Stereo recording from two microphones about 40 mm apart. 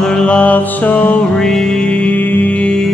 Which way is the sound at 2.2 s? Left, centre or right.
Left.